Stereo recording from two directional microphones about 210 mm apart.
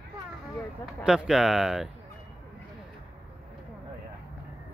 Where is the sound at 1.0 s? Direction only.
5° right (ahead or behind).